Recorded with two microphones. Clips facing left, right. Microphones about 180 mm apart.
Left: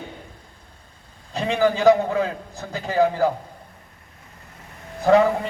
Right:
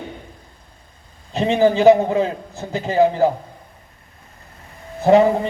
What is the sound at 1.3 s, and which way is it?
A man's voice, 20° right (ahead or behind).